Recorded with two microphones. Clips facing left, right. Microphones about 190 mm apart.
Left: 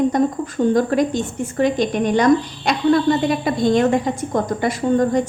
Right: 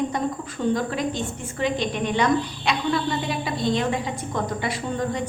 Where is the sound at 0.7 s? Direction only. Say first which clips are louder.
Left 8 dB; 45° left (ahead or behind).